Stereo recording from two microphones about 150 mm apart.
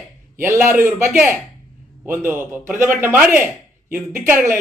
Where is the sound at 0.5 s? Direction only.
15° right (ahead or behind).